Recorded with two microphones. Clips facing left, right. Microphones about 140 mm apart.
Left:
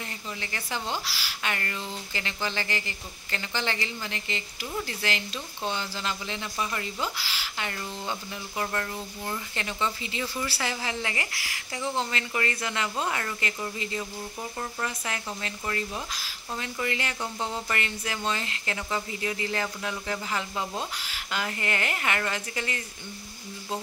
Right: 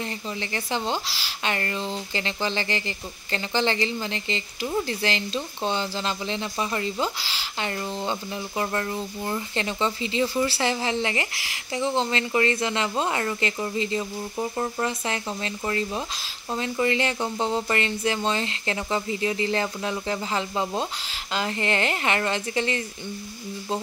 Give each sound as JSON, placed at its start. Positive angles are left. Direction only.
{"t": 0.4, "sound": "speech", "side_deg": -25}